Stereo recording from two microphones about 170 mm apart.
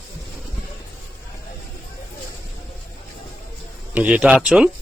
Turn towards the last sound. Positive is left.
turn(degrees=-5)  # may be behind; listen again after turning